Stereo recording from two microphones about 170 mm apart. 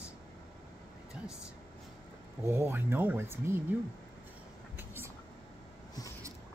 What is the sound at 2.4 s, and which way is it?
Speech, 10° right (ahead or behind).